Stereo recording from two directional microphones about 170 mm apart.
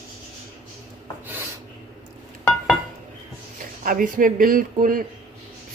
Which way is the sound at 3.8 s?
55° right (ahead or behind).